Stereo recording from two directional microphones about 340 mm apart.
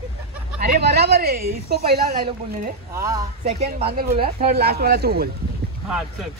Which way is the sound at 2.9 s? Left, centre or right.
Centre.